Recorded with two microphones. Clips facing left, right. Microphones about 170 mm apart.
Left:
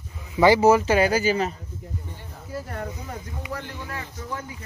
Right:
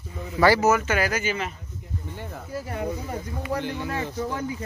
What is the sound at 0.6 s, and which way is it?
Speech, 30° left (ahead or behind).